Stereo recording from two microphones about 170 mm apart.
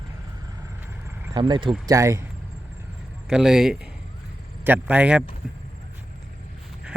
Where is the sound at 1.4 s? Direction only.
25° right (ahead or behind).